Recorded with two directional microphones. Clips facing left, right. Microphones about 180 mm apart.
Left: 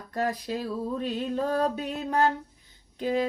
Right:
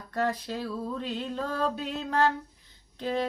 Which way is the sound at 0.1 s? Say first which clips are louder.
Left 1 dB; 15° left (ahead or behind).